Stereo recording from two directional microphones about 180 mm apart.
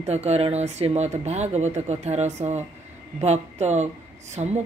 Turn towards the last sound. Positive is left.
turn(degrees=-40)  # may be behind; listen again after turning